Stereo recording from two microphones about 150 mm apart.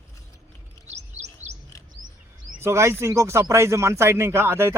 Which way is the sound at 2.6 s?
15° right (ahead or behind).